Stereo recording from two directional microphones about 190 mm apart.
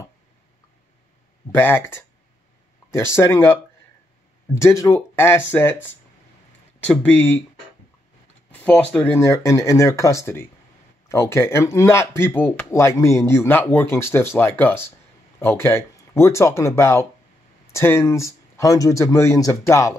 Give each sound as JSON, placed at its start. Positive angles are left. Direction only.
{"t": 1.5, "sound": "speech", "side_deg": 10}
{"t": 8.5, "sound": "speech", "side_deg": 10}